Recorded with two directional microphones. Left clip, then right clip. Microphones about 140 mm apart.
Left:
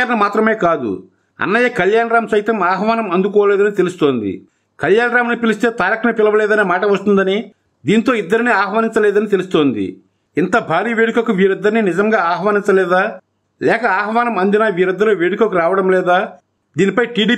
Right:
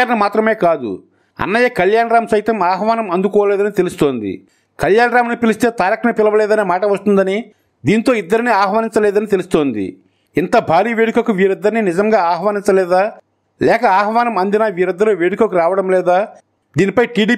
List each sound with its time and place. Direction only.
0.0 s a man's voice: 35° right (ahead or behind)
9.8 s a sound: 35° right (ahead or behind)
10.5 s a man's voice: 35° right (ahead or behind)